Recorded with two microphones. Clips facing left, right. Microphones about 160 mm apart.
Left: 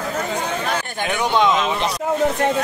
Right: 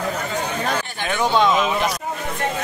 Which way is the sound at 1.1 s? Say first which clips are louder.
Even; 15° left (ahead or behind).